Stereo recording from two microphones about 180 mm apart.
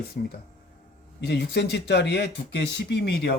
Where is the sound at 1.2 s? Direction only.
65° left (ahead or behind).